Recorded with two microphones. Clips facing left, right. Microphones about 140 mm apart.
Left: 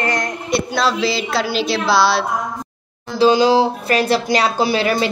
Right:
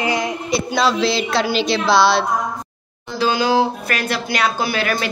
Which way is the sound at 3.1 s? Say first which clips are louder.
Left 4 dB; 30° left (ahead or behind).